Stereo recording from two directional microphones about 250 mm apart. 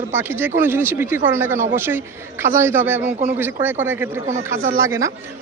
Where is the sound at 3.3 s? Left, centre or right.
Centre.